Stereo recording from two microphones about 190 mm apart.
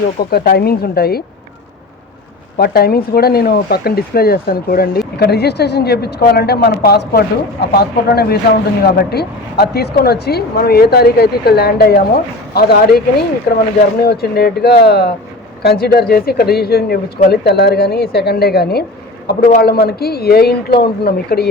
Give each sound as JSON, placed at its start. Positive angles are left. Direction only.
{"t": 0.2, "sound": "speech", "side_deg": 55}
{"t": 2.6, "sound": "speech", "side_deg": 55}
{"t": 14.0, "sound": "speech", "side_deg": 55}